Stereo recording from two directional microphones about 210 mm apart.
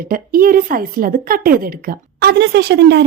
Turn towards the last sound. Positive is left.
turn(degrees=-55)  # may be behind; listen again after turning